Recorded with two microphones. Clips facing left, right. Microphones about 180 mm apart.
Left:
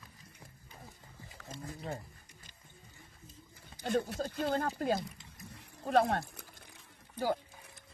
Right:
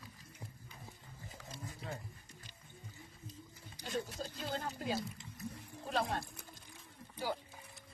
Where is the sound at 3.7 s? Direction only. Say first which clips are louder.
Left 8 dB; 55° left (ahead or behind).